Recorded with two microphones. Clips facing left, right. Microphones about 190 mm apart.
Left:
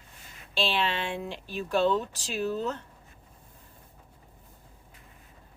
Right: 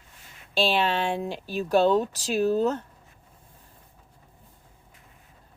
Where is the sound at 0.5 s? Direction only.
40° right (ahead or behind).